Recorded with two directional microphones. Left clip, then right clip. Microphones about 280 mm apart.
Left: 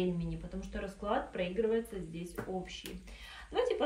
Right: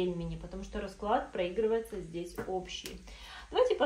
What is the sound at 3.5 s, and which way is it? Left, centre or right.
Speech, centre.